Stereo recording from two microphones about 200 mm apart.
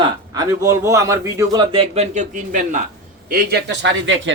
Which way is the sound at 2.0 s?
40° right (ahead or behind).